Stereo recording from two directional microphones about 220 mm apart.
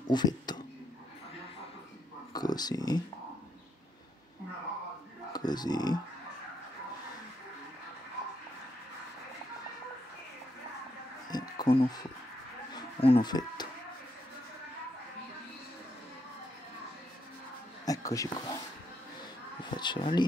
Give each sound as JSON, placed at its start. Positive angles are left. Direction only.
{"t": 0.1, "sound": "speech", "side_deg": 20}
{"t": 2.3, "sound": "speech", "side_deg": 20}
{"t": 5.3, "sound": "speech", "side_deg": 20}
{"t": 11.2, "sound": "insect", "side_deg": 20}
{"t": 12.7, "sound": "a sound", "side_deg": 20}
{"t": 17.8, "sound": "a sound", "side_deg": 15}
{"t": 19.6, "sound": "speech", "side_deg": 20}